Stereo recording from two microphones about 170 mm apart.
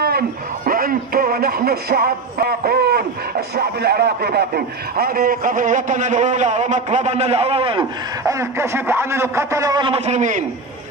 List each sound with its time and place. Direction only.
0.7 s a man's voice: 60° right (ahead or behind); by 7.8 s 30° right (ahead or behind)
8.2 s a man's voice: 15° right (ahead or behind); by 10.4 s 45° right (ahead or behind)